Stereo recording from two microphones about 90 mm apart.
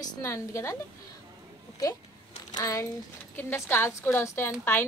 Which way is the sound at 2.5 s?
35° left (ahead or behind).